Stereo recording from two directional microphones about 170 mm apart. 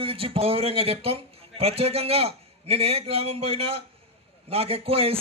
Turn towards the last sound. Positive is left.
turn(degrees=-35)  # may be behind; listen again after turning